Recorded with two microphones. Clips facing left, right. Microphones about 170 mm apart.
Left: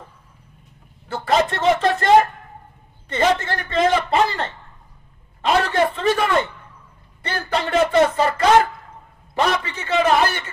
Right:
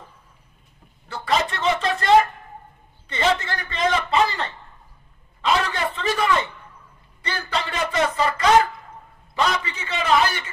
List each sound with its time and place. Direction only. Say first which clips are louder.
1.0 s speech: left 4 dB; 50° left (ahead or behind)
3.1 s a man's voice: left 3 dB; 50° left (ahead or behind)
9.3 s a sound: left 3 dB; 50° left (ahead or behind)